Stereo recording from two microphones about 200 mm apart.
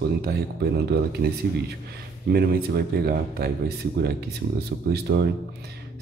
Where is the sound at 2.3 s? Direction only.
50° right (ahead or behind).